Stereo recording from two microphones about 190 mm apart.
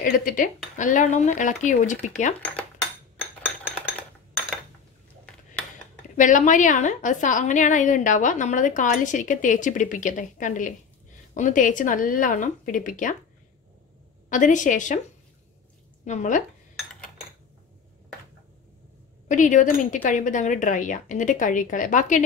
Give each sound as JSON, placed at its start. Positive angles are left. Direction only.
{"t": 0.0, "sound": "a woman's voice", "side_deg": 45}
{"t": 3.4, "sound": "a sound", "side_deg": -5}
{"t": 6.1, "sound": "a woman's voice", "side_deg": 40}
{"t": 14.3, "sound": "a woman's voice", "side_deg": 40}
{"t": 16.1, "sound": "a woman's voice", "side_deg": 40}
{"t": 19.2, "sound": "a woman's voice", "side_deg": 40}